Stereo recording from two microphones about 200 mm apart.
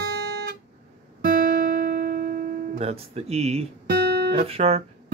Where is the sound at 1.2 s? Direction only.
45° right (ahead or behind).